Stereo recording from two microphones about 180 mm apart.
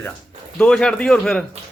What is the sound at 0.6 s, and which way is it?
Speech, 5° left (ahead or behind).